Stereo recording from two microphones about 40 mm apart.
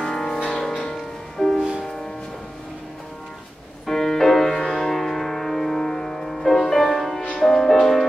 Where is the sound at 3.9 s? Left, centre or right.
Centre.